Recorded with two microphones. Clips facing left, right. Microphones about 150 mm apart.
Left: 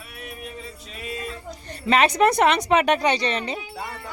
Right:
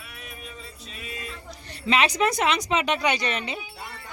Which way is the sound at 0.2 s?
55° left (ahead or behind).